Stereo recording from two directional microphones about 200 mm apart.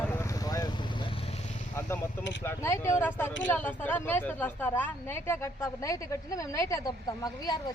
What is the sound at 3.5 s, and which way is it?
Speech, 10° left (ahead or behind).